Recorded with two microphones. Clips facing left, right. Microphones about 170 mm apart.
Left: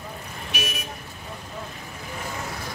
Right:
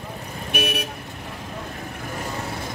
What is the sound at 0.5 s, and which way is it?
Speech, 60° right (ahead or behind).